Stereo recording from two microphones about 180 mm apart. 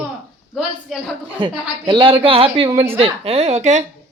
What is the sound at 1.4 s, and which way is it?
Speech, 25° right (ahead or behind).